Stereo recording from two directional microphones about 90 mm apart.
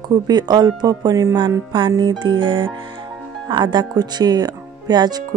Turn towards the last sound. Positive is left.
turn(degrees=-50)  # may be behind; listen again after turning